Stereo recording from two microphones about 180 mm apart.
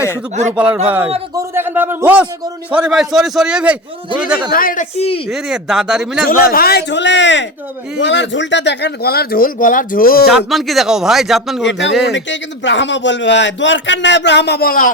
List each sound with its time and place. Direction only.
0.5 s a man's voice: 5° right (ahead or behind)
4.5 s a woman's voice: 50° left (ahead or behind); by 5.2 s 35° left (ahead or behind)
5.3 s speech: centre (ahead or behind)
6.2 s a man's voice: 55° left (ahead or behind)
10.3 s speech: centre (ahead or behind)
11.6 s a man's voice: 85° left; by 14.8 s 55° left (ahead or behind)